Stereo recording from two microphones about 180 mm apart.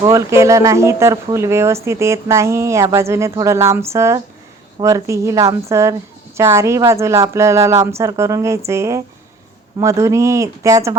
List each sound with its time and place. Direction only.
0.0 s speech: 15° right (ahead or behind)